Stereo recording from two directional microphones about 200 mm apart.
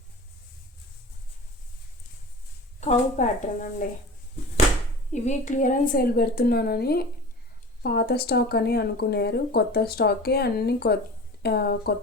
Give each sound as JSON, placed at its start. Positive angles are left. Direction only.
{"t": 2.8, "sound": "speech", "side_deg": 40}
{"t": 5.1, "sound": "speech", "side_deg": 35}